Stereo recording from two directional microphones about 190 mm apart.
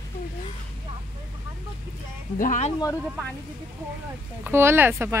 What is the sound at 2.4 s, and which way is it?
Speech, 40° left (ahead or behind).